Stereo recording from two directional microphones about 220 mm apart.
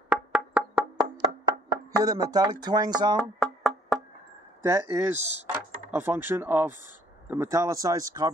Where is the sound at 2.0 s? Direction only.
15° right (ahead or behind).